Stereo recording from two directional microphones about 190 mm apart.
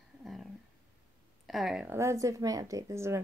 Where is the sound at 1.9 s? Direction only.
15° right (ahead or behind).